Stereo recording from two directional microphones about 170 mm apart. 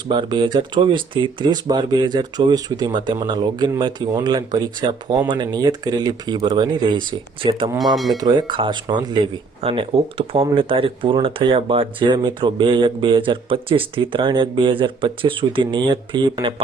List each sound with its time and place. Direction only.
0.1 s speech: 25° right (ahead or behind)
7.9 s speech: centre (ahead or behind)
8.2 s speech: 25° right (ahead or behind)